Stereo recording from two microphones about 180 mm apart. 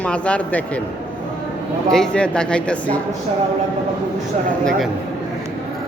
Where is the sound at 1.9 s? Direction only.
5° left (ahead or behind).